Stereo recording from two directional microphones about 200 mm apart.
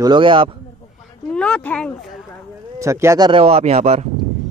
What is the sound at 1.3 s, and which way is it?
Speech, 5° left (ahead or behind).